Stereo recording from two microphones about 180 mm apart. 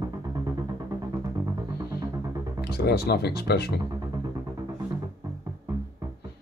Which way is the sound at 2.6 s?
60° left (ahead or behind).